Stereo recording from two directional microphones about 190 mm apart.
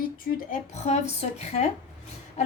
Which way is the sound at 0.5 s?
35° left (ahead or behind).